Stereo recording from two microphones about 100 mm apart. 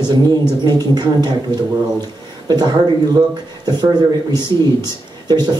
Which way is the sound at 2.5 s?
45° right (ahead or behind).